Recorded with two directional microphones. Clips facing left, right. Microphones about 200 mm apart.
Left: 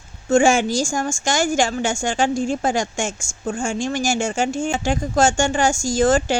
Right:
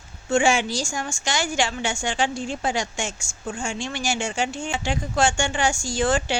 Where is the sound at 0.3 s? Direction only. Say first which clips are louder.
Left 5 dB; 45° left (ahead or behind).